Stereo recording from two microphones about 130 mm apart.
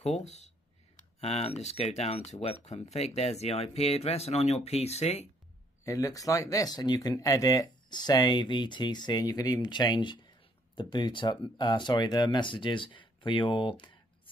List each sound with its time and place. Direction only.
0.0 s speech: 60° left (ahead or behind)
5.9 s speech: 25° left (ahead or behind)